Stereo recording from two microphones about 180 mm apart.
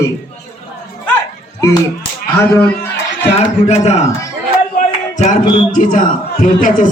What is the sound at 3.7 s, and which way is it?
Speech, 35° left (ahead or behind).